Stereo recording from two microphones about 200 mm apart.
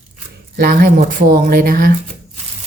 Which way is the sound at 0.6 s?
45° right (ahead or behind).